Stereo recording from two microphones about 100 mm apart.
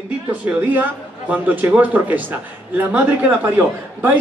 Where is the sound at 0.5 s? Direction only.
15° right (ahead or behind).